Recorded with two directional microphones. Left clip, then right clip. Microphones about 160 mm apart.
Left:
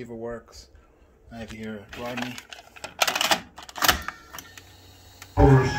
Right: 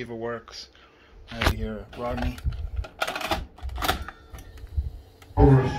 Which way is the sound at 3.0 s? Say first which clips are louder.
Left 5 dB; 5° left (ahead or behind).